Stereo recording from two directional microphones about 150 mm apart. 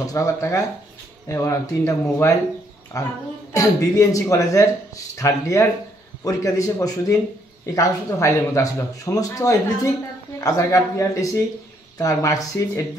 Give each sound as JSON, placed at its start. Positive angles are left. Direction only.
{"t": 0.0, "sound": "speech", "side_deg": 20}